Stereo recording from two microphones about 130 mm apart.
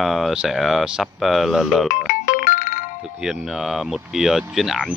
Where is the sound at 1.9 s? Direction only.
90° left.